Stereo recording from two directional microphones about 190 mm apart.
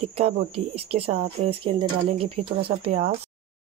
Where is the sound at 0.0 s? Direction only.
30° right (ahead or behind).